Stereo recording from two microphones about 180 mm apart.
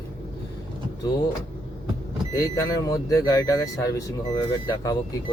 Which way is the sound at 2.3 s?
20° left (ahead or behind).